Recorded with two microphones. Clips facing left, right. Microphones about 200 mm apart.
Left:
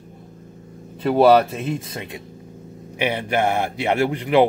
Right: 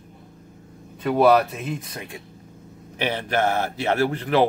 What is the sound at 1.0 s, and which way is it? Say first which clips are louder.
Speech: left 3 dB; 30° left (ahead or behind).